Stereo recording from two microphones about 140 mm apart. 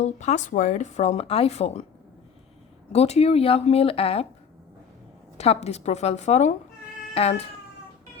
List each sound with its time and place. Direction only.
0.0 s speech: 55° left (ahead or behind)
2.9 s speech: 50° left (ahead or behind)
5.4 s speech: 50° left (ahead or behind)